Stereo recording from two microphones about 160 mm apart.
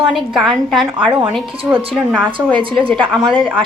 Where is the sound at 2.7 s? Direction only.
5° left (ahead or behind).